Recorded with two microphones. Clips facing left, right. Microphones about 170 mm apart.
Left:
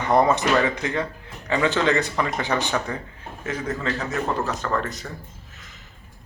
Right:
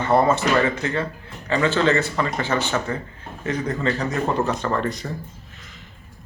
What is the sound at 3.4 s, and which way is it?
Speech, 5° left (ahead or behind).